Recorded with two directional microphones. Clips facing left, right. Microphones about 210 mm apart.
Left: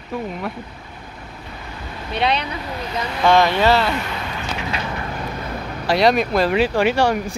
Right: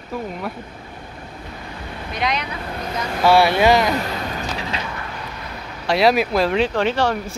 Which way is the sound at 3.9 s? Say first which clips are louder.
Right 2 dB; 40° right (ahead or behind).